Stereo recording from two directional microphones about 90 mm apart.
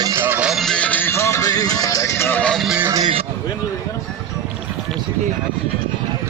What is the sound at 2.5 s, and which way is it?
Music, 5° right (ahead or behind).